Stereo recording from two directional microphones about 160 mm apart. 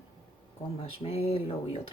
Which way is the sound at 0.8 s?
40° left (ahead or behind).